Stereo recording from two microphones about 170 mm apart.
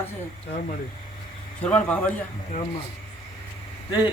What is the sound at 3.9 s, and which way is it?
Speech, 25° left (ahead or behind).